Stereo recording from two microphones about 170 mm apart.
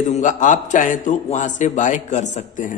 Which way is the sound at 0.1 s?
45° left (ahead or behind).